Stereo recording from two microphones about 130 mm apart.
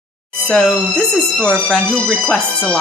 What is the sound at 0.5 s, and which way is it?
Speech, 5° left (ahead or behind).